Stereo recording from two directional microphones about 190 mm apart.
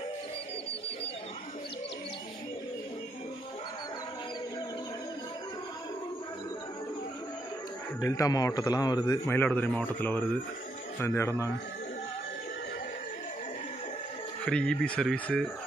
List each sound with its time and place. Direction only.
8.0 s a man's voice: 20° left (ahead or behind)
14.4 s speech: 5° left (ahead or behind)